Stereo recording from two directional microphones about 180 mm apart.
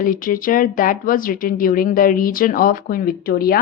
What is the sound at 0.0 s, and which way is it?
Speech, 50° left (ahead or behind).